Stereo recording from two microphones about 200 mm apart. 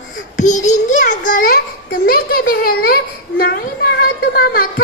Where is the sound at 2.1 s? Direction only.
50° left (ahead or behind).